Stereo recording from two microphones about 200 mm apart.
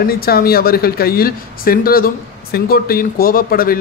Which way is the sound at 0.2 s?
50° left (ahead or behind).